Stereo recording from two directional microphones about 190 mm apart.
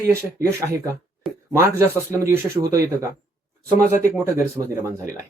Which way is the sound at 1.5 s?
15° right (ahead or behind).